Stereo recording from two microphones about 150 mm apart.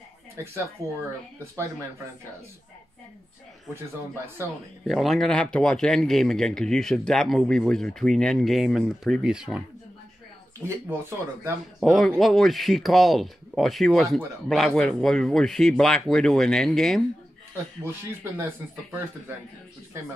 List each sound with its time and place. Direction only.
0.4 s speech: 15° right (ahead or behind)
4.8 s speech: centre (ahead or behind)
10.6 s speech: 15° right (ahead or behind)
11.8 s speech: centre (ahead or behind)
17.8 s speech: 15° right (ahead or behind)